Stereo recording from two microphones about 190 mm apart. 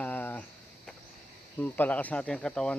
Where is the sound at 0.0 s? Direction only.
10° left (ahead or behind).